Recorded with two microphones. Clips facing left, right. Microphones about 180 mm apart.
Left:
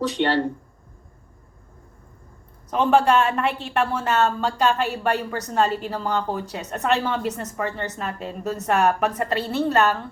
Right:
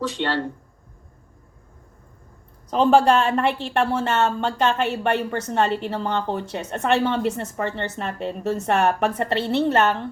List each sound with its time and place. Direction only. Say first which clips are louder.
0.2 s speech: left 5 dB; 15° left (ahead or behind)
2.6 s a woman's voice: right 2 dB; 30° right (ahead or behind)